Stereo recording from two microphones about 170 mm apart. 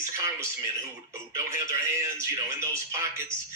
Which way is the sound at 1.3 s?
20° right (ahead or behind).